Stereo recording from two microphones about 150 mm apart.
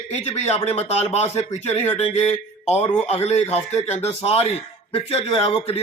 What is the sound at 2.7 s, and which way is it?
Speech, 45° left (ahead or behind).